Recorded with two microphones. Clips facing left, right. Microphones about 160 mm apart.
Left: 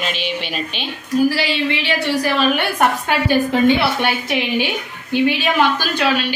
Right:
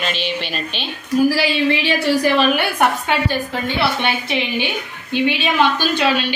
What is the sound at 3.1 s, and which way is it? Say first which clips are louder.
A woman's voice: left 4 dB; 10° left (ahead or behind).